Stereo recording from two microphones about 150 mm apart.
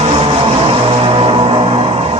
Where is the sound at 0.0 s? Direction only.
40° right (ahead or behind).